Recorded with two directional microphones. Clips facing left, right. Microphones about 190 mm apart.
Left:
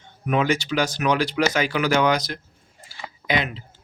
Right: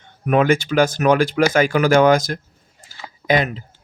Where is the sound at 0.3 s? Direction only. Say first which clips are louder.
Right 6 dB; 50° right (ahead or behind).